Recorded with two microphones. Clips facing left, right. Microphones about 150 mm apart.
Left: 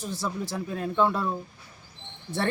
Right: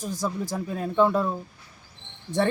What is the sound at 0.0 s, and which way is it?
Speech, 45° right (ahead or behind).